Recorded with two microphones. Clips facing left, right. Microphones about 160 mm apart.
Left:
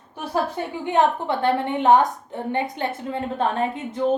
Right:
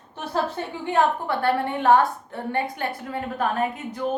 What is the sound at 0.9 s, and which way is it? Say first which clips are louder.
A woman's voice: left 2 dB; 20° left (ahead or behind).